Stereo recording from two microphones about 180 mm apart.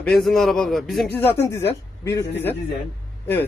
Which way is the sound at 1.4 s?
15° left (ahead or behind).